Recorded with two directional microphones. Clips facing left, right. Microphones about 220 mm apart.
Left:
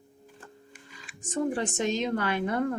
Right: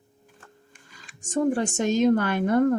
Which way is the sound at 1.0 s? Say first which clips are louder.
Right 5 dB; 45° right (ahead or behind).